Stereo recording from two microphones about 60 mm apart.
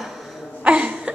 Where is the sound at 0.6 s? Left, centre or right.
Centre.